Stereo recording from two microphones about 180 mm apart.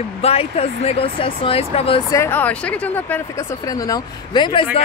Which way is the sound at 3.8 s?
20° left (ahead or behind).